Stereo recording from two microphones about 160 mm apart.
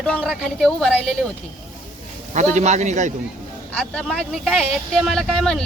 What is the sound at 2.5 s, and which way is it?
Speech, 45° right (ahead or behind).